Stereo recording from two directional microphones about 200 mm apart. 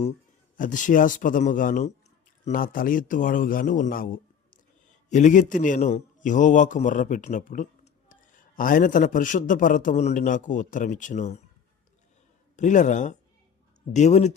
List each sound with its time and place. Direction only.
0.5 s a man's voice: 40° left (ahead or behind)
12.5 s a man's voice: 35° left (ahead or behind)